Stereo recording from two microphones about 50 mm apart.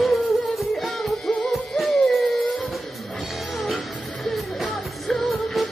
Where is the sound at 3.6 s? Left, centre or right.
Centre.